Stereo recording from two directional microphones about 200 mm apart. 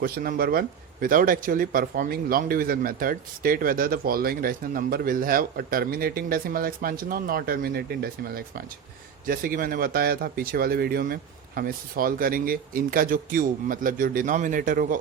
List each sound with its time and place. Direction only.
0.0 s speech: 45° right (ahead or behind)